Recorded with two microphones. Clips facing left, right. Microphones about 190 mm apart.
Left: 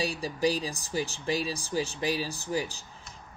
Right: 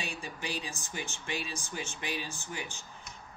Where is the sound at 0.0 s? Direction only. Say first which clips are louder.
Left 12 dB; 35° left (ahead or behind).